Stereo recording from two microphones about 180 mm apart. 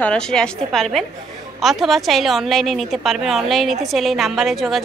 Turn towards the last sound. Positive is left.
turn(degrees=0)  # may be behind; listen again after turning